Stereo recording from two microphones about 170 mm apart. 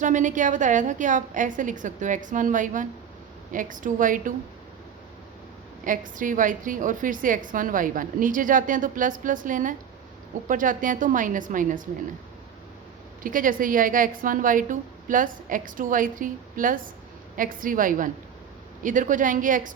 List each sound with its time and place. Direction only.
0.0 s a woman's voice: 50° right (ahead or behind)
5.8 s a woman's voice: 50° right (ahead or behind)
13.2 s a woman's voice: 55° right (ahead or behind)